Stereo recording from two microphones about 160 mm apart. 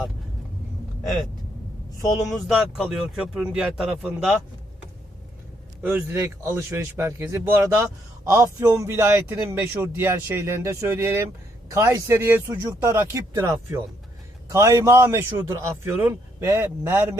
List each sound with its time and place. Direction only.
2.2 s speech: centre (ahead or behind)
5.8 s a man's voice: 10° right (ahead or behind)